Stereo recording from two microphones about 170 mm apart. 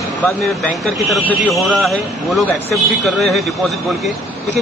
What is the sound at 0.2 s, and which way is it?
A man's voice, 5° left (ahead or behind).